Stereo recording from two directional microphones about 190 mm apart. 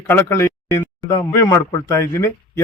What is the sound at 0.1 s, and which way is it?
A man's voice, 15° left (ahead or behind).